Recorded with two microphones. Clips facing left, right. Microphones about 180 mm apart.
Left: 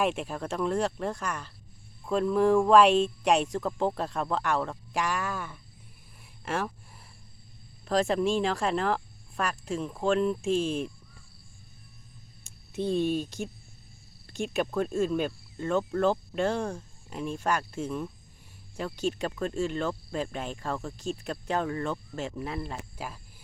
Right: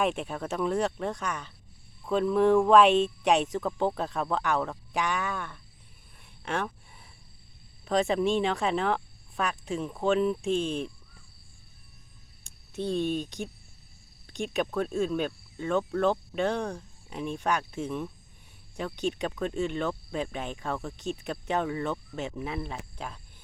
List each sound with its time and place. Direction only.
0.0 s speech: centre (ahead or behind)
6.4 s a sound: 5° left (ahead or behind)
7.9 s speech: centre (ahead or behind)
12.7 s speech: 10° left (ahead or behind)